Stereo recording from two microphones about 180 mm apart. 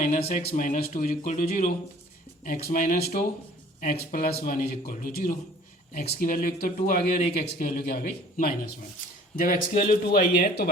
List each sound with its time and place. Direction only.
0.0 s speech: 40° left (ahead or behind)
2.7 s speech: 45° left (ahead or behind)
4.3 s speech: 40° left (ahead or behind)
5.9 s speech: 35° left (ahead or behind)
6.1 s speech: 50° left (ahead or behind)